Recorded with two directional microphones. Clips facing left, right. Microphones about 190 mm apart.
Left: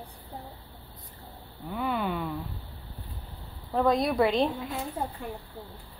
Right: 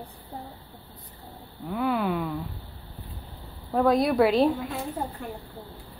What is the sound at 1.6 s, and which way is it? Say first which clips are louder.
Speech: right 4 dB; centre (ahead or behind).